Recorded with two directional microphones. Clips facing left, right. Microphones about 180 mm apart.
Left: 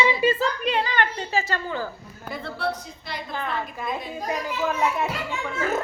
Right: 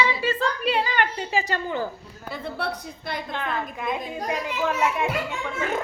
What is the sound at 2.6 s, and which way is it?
Speech, 65° right (ahead or behind).